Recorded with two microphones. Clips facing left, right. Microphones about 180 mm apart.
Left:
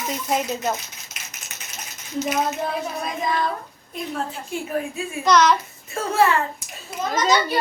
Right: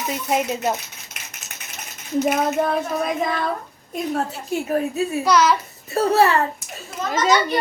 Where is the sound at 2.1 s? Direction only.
55° right (ahead or behind).